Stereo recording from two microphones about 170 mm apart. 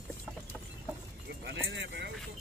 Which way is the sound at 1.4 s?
90° right.